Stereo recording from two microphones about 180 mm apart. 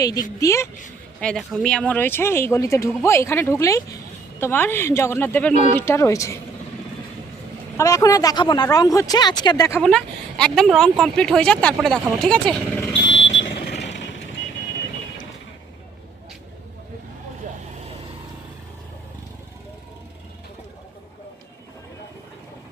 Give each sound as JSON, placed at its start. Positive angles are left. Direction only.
{"t": 0.0, "sound": "speech", "side_deg": 20}
{"t": 1.2, "sound": "speech", "side_deg": 5}
{"t": 5.5, "sound": "speech", "side_deg": -30}
{"t": 5.8, "sound": "speech", "side_deg": 15}
{"t": 7.8, "sound": "speech", "side_deg": 20}
{"t": 9.8, "sound": "speech", "side_deg": 5}
{"t": 13.5, "sound": "vehicle", "side_deg": 60}
{"t": 13.8, "sound": "vehicle", "side_deg": 80}